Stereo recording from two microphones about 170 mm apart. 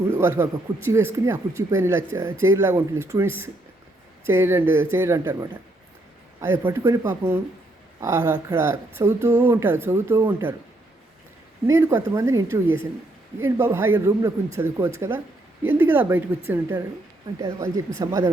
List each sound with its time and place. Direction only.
0.1 s speech: 15° right (ahead or behind)
11.6 s speech: 15° right (ahead or behind)